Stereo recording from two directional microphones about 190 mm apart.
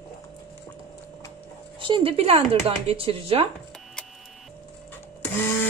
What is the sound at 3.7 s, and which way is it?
Tick-tock, 5° left (ahead or behind).